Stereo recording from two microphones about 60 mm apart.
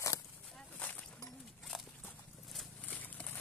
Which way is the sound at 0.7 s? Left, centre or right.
Left.